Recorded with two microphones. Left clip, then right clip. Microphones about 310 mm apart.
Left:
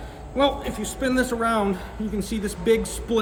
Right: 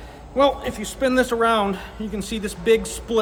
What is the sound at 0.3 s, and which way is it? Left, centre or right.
Speech, centre.